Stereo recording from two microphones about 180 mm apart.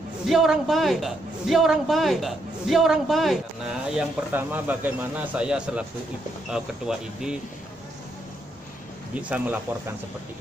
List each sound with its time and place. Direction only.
0.3 s a man's voice: centre (ahead or behind)
3.9 s a man's voice: 10° right (ahead or behind)
9.1 s a man's voice: 10° right (ahead or behind)